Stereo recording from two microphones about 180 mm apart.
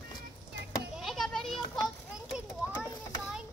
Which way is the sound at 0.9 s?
Centre (ahead or behind).